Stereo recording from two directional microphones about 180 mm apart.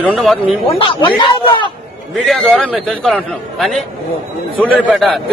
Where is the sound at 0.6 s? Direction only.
30° left (ahead or behind).